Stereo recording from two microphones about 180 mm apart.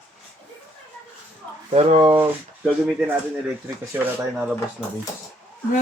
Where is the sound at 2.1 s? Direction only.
10° right (ahead or behind).